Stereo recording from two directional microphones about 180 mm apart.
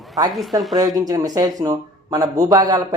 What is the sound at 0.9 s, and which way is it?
Speech, 20° right (ahead or behind).